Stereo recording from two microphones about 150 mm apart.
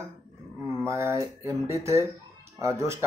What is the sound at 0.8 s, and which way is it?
Speech, 20° right (ahead or behind).